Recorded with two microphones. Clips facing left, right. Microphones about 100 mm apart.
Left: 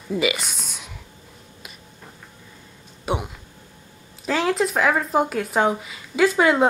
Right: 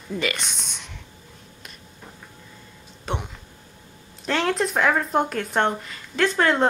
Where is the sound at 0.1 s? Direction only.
5° left (ahead or behind).